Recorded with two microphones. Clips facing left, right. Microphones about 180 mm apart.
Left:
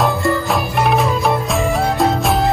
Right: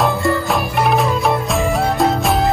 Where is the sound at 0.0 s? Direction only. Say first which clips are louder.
Even; centre (ahead or behind).